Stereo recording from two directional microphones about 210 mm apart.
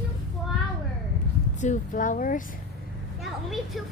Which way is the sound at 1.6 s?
35° left (ahead or behind).